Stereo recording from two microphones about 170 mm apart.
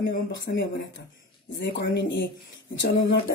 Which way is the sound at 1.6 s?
90° left.